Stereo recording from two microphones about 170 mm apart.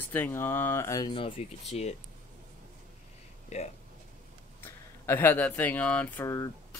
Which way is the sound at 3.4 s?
40° left (ahead or behind).